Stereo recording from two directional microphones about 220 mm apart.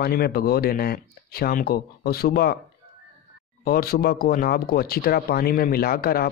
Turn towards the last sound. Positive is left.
turn(degrees=45)  # may be behind; listen again after turning